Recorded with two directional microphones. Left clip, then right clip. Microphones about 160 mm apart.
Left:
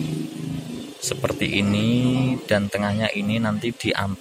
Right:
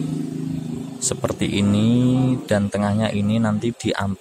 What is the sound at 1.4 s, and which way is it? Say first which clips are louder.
Speech: right 2 dB; 25° right (ahead or behind).